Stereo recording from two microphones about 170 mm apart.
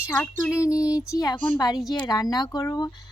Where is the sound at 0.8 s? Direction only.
5° right (ahead or behind).